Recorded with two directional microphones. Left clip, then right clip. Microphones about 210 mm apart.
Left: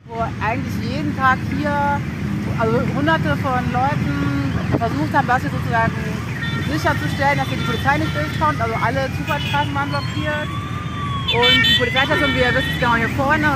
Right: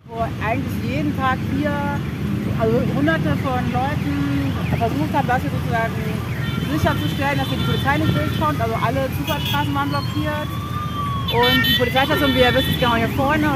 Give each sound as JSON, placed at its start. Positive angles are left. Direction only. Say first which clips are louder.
{"t": 2.6, "sound": "speech", "louder": "even", "side_deg": 0}
{"t": 5.1, "sound": "speech", "louder": "left 3 dB", "side_deg": 15}
{"t": 11.2, "sound": "speech", "louder": "left 3 dB", "side_deg": -45}
{"t": 12.8, "sound": "speech", "louder": "left 3 dB", "side_deg": -20}